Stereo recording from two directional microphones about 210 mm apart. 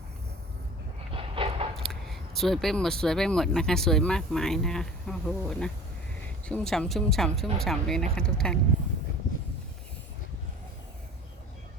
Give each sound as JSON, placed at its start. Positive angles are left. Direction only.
{"t": 1.1, "sound": "train", "side_deg": -25}
{"t": 1.7, "sound": "speech", "side_deg": 0}